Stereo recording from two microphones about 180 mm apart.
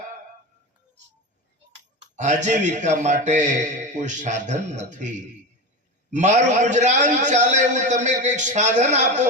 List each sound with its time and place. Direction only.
2.1 s a man's voice: 40° right (ahead or behind)